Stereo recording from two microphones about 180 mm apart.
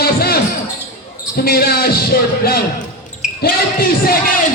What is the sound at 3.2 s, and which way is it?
Basketball bounce, 5° right (ahead or behind).